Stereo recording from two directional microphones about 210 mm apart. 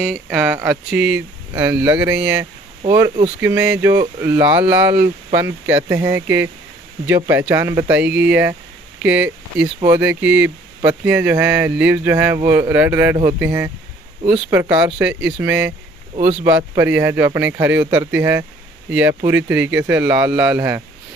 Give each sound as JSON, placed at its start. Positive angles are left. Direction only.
{"t": 0.0, "sound": "speech", "side_deg": -5}
{"t": 1.5, "sound": "speech", "side_deg": -20}
{"t": 1.8, "sound": "speech", "side_deg": -10}
{"t": 2.9, "sound": "speech", "side_deg": -15}
{"t": 3.9, "sound": "speech", "side_deg": -20}
{"t": 4.4, "sound": "speech", "side_deg": -10}